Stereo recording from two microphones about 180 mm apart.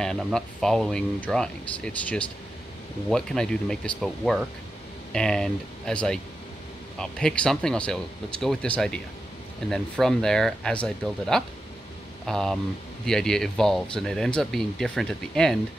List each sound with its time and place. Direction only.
0.0 s speech: 5° left (ahead or behind)